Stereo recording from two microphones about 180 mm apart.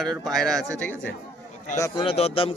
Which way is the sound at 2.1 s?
35° left (ahead or behind).